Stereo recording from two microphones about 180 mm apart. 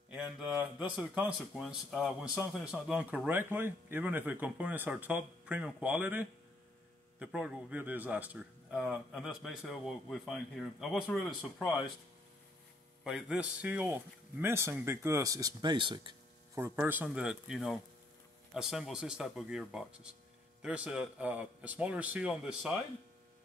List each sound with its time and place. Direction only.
0.1 s speech: 5° right (ahead or behind)
13.0 s speech: 5° right (ahead or behind); by 16.2 s 25° right (ahead or behind)
16.5 s speech: 15° right (ahead or behind)